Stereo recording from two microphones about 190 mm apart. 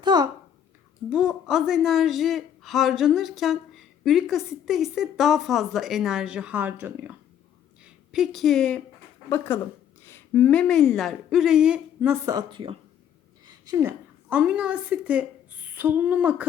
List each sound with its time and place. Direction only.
0.0 s a child's voice: 20° right (ahead or behind)
1.1 s a woman's voice: 5° right (ahead or behind)
10.0 s a woman's voice: 10° left (ahead or behind); by 16.5 s 10° right (ahead or behind)